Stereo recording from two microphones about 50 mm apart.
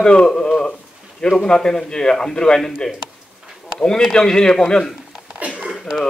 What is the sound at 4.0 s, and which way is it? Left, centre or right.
Speech, centre.